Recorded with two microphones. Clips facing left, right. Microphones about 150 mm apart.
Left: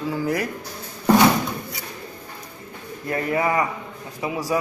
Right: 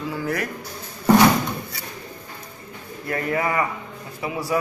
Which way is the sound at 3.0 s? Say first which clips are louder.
Left 1 dB; 20° left (ahead or behind).